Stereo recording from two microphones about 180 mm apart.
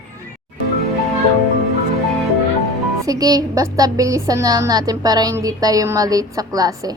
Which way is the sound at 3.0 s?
20° right (ahead or behind).